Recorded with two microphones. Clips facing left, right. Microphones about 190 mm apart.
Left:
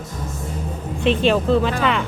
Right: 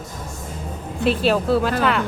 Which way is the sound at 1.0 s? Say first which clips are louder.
Left 1 dB; 5° right (ahead or behind).